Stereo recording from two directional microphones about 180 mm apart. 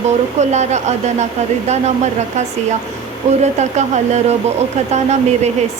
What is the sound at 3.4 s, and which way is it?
Speech, 40° right (ahead or behind).